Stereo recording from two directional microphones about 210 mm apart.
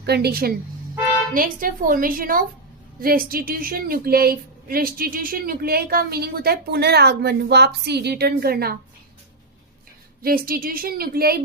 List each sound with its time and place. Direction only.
0.0 s a woman's voice: 50° right (ahead or behind)
10.2 s a woman's voice: 45° right (ahead or behind)